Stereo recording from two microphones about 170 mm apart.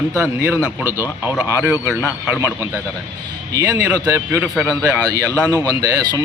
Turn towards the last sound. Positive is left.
turn(degrees=-20)  # may be behind; listen again after turning